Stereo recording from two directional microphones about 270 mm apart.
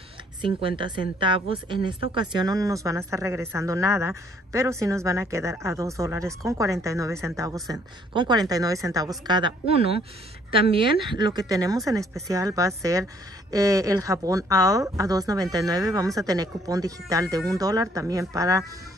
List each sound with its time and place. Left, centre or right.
0.4 s a woman's voice: centre